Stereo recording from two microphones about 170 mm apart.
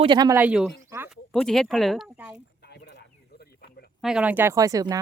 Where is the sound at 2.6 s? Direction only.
80° left.